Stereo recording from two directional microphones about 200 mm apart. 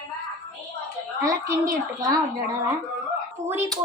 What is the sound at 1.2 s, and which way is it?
Speech, 15° right (ahead or behind).